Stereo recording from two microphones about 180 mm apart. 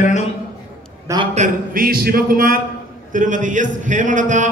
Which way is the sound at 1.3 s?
45° right (ahead or behind).